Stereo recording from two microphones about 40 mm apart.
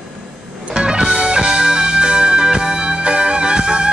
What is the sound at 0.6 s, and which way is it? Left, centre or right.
Music, right.